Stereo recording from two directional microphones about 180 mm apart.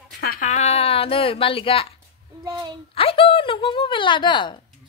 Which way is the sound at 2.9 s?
30° left (ahead or behind).